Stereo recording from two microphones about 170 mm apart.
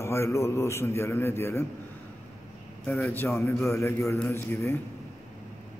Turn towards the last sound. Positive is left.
turn(degrees=15)  # may be behind; listen again after turning